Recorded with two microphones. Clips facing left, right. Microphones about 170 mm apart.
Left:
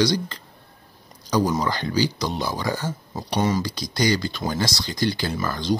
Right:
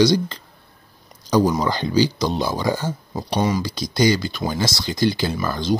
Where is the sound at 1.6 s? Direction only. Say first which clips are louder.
Right 4 dB; 20° right (ahead or behind).